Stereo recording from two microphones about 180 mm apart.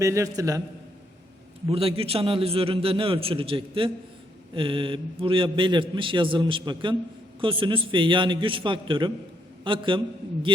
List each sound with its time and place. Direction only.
0.0 s a man's voice: 15° right (ahead or behind)
1.6 s a man's voice: 30° right (ahead or behind)